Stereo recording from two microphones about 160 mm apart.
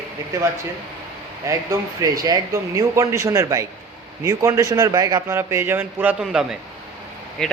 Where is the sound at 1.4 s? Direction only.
20° right (ahead or behind).